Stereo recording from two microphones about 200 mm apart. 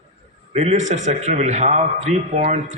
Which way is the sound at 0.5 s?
35° right (ahead or behind).